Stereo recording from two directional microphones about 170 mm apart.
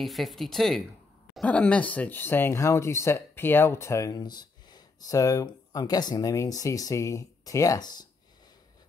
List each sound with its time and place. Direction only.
0.0 s speech: centre (ahead or behind); by 8.1 s 25° left (ahead or behind)